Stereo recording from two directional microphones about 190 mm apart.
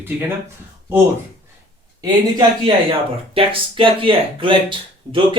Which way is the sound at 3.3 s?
30° right (ahead or behind).